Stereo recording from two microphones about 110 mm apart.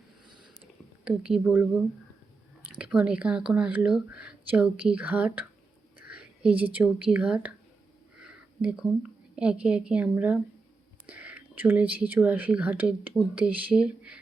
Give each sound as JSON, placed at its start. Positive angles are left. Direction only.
{"t": 0.3, "sound": "a sound", "side_deg": -45}
{"t": 1.0, "sound": "speech", "side_deg": -10}
{"t": 2.7, "sound": "a woman's voice", "side_deg": -10}